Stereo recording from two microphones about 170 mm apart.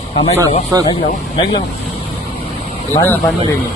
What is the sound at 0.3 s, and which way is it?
Speech, 20° right (ahead or behind).